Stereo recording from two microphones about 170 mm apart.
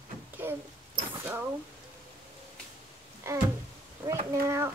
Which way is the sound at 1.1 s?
15° right (ahead or behind).